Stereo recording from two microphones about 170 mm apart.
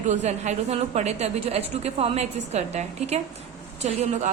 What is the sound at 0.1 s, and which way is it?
A woman's voice, 40° right (ahead or behind).